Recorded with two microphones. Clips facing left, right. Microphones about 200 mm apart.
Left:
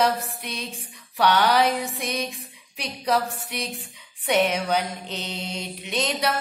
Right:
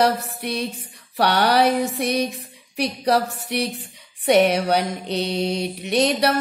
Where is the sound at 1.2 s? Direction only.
65° right (ahead or behind).